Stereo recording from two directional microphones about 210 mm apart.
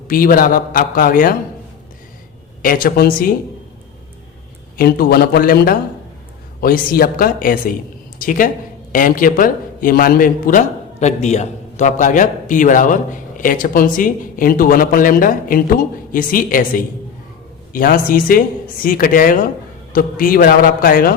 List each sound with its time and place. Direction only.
0.1 s a man's voice: 45° left (ahead or behind)
2.6 s a woman's voice: 40° left (ahead or behind)
4.8 s a woman's voice: 45° left (ahead or behind)